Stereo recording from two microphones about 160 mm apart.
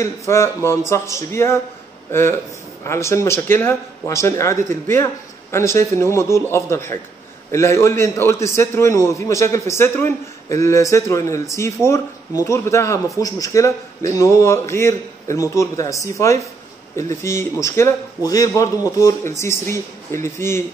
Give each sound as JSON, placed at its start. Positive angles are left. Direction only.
{"t": 0.3, "sound": "a man's voice", "side_deg": 15}